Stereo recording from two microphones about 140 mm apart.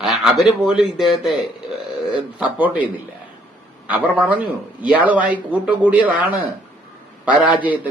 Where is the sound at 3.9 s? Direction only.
10° right (ahead or behind).